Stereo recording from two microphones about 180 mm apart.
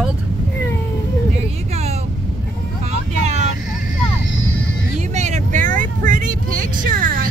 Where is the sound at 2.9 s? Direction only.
40° right (ahead or behind).